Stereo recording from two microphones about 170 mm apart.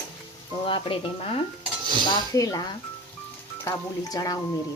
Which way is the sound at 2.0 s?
20° left (ahead or behind).